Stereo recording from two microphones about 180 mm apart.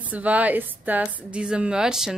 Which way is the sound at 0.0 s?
10° right (ahead or behind).